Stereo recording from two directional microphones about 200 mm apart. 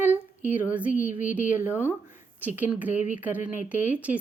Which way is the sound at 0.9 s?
40° left (ahead or behind).